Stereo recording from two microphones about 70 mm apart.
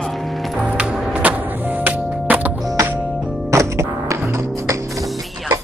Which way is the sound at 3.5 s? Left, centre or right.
Right.